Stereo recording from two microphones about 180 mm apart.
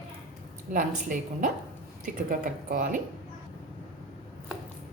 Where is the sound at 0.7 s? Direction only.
45° right (ahead or behind).